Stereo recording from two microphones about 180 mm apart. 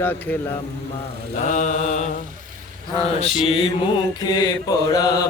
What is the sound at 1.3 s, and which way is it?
Mantra, 40° left (ahead or behind).